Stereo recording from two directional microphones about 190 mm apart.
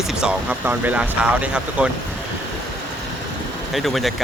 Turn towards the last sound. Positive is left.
turn(degrees=0)  # may be behind; listen again after turning